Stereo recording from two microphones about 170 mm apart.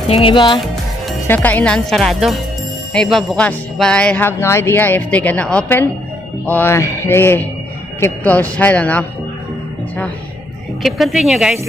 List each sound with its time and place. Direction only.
0.1 s speech: 30° left (ahead or behind)
1.2 s speech: 10° left (ahead or behind)
10.8 s speech: centre (ahead or behind)